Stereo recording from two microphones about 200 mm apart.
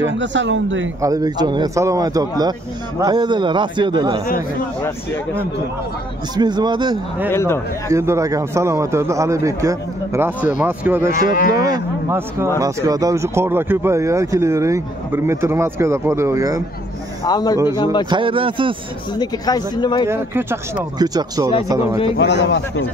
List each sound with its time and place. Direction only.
0.2 s speech: 65° right (ahead or behind)
1.0 s speech: 20° right (ahead or behind)
4.8 s speech: 10° left (ahead or behind)
6.3 s speech: 20° right (ahead or behind)
7.2 s speech: 10° left (ahead or behind)
7.9 s speech: 15° right (ahead or behind)
17.3 s speech: 20° left (ahead or behind)
18.1 s speech: 25° right (ahead or behind)
19.1 s speech: 20° left (ahead or behind)
20.1 s speech: 10° right (ahead or behind)
22.1 s speech: 60° left (ahead or behind)